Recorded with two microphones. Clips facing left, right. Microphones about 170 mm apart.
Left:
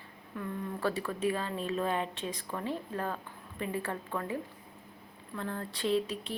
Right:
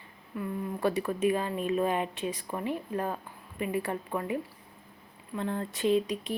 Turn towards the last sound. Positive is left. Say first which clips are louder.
# right 4 dB
turn(degrees=-15)  # may be behind; listen again after turning